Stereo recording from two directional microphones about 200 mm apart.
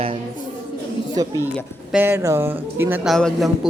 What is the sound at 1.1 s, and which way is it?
A man's voice, 15° right (ahead or behind).